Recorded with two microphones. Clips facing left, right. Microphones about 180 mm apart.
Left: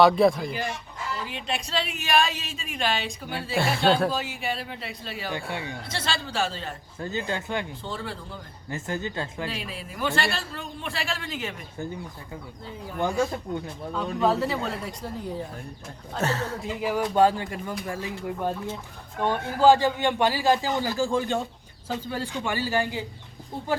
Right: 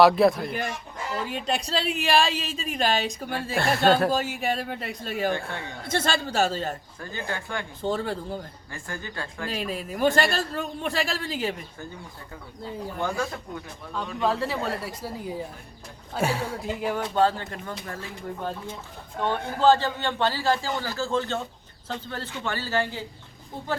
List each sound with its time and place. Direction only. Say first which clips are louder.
0.0 s speech: right 1 dB; centre (ahead or behind)
1.3 s a woman's voice: right 4 dB; 40° right (ahead or behind)
3.6 s speech: right 1 dB; centre (ahead or behind)
4.1 s a man's voice: right 4 dB; 45° right (ahead or behind)
5.3 s a man's voice: right 2 dB; 15° left (ahead or behind)
5.9 s a man's voice: right 6 dB; 45° right (ahead or behind)
7.0 s speech: left 5 dB; 20° left (ahead or behind)
7.8 s a man's voice: right 7 dB; 45° right (ahead or behind)
8.7 s speech: left 6 dB; 20° left (ahead or behind)
9.5 s a man's voice: right 5 dB; 45° right (ahead or behind)
13.0 s a man's voice: left 5 dB; 15° left (ahead or behind)
14.2 s a woman's voice: left 2 dB; 5° left (ahead or behind)
16.6 s speech: even; centre (ahead or behind)
17.2 s a man's voice: left 2 dB; 10° left (ahead or behind)